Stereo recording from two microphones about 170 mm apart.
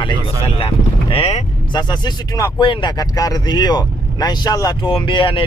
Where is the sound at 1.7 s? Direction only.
25° left (ahead or behind).